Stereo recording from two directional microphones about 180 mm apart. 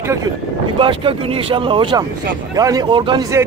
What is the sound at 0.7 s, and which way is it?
Speech, 30° right (ahead or behind).